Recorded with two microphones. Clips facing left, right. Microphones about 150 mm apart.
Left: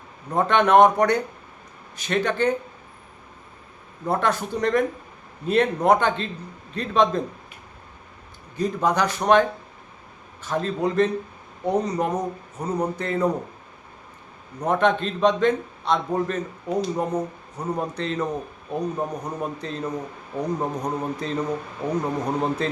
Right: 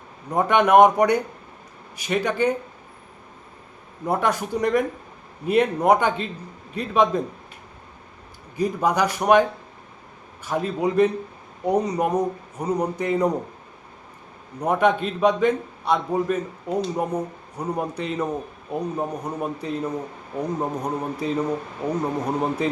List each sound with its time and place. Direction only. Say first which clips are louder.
0.3 s a man's voice: right 1 dB; 10° right (ahead or behind)
4.0 s a man's voice: even; 10° right (ahead or behind)
8.5 s a man's voice: right 1 dB; 10° right (ahead or behind)
14.6 s a man's voice: right 1 dB; 10° right (ahead or behind)